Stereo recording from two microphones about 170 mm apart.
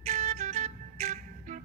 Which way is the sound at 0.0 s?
40° right (ahead or behind).